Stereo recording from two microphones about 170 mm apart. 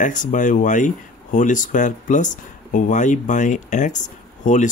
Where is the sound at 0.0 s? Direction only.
50° left (ahead or behind).